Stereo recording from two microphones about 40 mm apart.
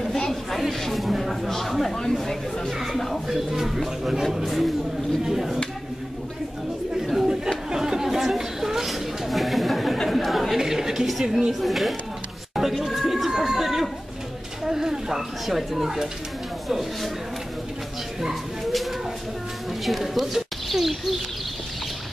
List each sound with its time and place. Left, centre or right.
0.0 s a sound: centre
1.9 s speech: centre
3.3 s speech: centre
7.7 s chatter: centre
10.6 s a woman's voice: centre
12.5 s a sound: centre
14.6 s speech: centre
18.3 s a sound: centre
19.8 s speech: centre